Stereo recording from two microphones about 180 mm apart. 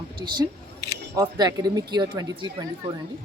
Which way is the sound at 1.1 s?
20° right (ahead or behind).